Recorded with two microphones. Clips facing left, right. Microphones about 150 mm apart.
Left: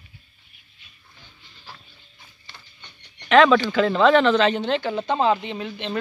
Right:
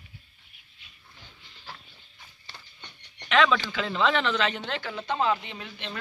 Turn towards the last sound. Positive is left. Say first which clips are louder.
# left 10 dB
turn(degrees=25)  # may be behind; listen again after turning